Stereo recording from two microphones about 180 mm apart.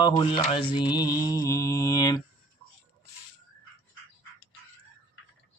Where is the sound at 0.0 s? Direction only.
25° left (ahead or behind).